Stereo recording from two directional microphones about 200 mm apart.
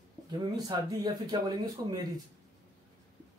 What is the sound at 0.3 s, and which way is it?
Speech, 20° right (ahead or behind).